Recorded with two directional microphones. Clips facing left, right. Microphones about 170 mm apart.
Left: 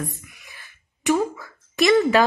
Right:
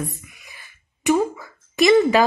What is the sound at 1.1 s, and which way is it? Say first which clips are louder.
Speech: right 2 dB; 15° right (ahead or behind).